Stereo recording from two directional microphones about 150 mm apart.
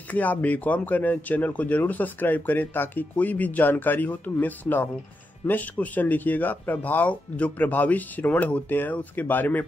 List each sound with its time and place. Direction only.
0.1 s speech: 10° left (ahead or behind)